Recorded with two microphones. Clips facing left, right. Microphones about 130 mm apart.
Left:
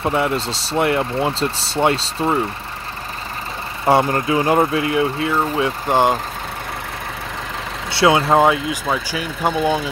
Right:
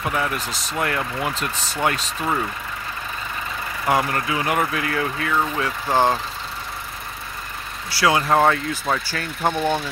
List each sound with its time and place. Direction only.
0.0 s speech: 25° left (ahead or behind)
3.8 s speech: 30° left (ahead or behind)
7.9 s speech: 25° left (ahead or behind)
8.5 s speech: 10° left (ahead or behind)